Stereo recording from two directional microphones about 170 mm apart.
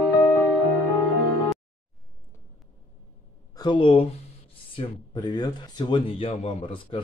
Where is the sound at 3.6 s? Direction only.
30° left (ahead or behind).